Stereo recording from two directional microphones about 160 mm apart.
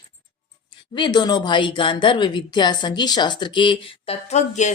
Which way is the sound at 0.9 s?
30° left (ahead or behind).